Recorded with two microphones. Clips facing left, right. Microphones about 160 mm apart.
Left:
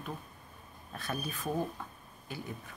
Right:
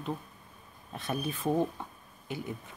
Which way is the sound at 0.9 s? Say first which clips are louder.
Right 4 dB; 20° right (ahead or behind).